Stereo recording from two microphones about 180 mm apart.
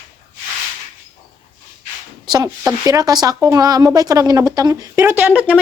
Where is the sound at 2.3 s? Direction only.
20° right (ahead or behind).